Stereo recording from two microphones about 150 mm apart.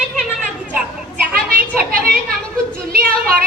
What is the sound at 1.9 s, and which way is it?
Speech, 80° right.